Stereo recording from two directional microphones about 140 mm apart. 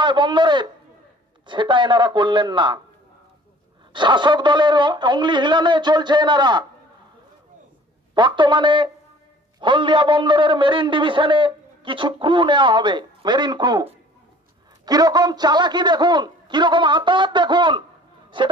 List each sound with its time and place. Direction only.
0.0 s a man's voice: 35° right (ahead or behind)
3.9 s a man's voice: 35° right (ahead or behind)
8.1 s a man's voice: 35° right (ahead or behind)
14.9 s a man's voice: 30° right (ahead or behind)